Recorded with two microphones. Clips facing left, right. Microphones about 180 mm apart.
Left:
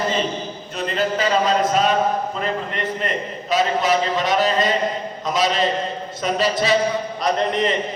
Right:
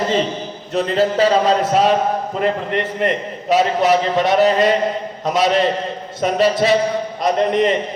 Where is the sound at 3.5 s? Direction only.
65° right (ahead or behind).